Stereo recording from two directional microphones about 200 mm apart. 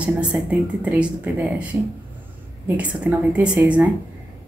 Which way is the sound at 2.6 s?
5° right (ahead or behind).